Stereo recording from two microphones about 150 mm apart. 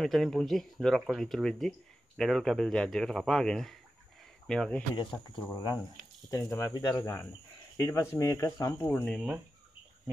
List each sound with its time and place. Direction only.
0.0 s speech: centre (ahead or behind)
5.3 s speech: 30° left (ahead or behind)
8.8 s speech: 10° left (ahead or behind)